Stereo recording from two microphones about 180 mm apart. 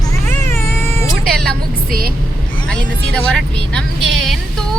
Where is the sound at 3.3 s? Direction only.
5° left (ahead or behind).